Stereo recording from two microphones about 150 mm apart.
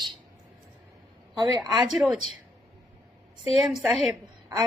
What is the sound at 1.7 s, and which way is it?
Speech, centre (ahead or behind).